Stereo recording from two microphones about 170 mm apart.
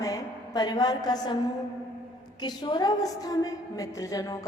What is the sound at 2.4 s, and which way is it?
A woman's voice, 25° left (ahead or behind).